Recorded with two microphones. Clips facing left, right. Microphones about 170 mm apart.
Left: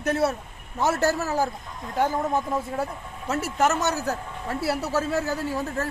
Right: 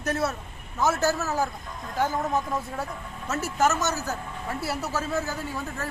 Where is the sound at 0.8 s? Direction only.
30° left (ahead or behind).